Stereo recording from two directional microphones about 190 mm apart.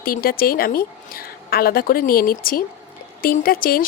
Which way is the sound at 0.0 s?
50° left (ahead or behind).